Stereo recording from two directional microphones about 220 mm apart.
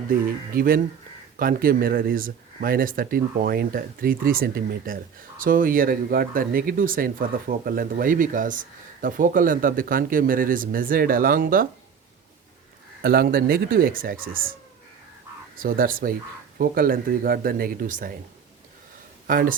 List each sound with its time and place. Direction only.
0.1 s speech: 40° right (ahead or behind)
13.0 s speech: 45° right (ahead or behind)
15.5 s speech: 40° right (ahead or behind)
19.3 s speech: 40° right (ahead or behind)